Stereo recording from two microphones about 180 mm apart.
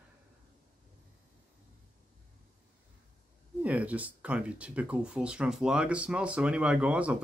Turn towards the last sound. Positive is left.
turn(degrees=-5)  # may be behind; listen again after turning